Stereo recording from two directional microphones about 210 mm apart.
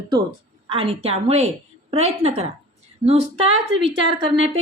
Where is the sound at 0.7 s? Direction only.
25° right (ahead or behind).